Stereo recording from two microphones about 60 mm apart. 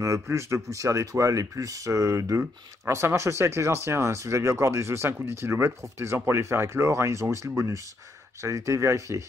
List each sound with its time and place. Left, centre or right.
0.0 s speech: right
2.8 s speech: right